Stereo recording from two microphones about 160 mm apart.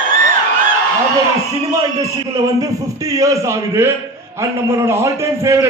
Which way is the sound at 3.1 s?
20° right (ahead or behind).